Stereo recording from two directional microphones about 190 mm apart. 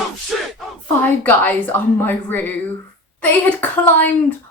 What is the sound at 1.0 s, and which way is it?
Speech, 10° left (ahead or behind).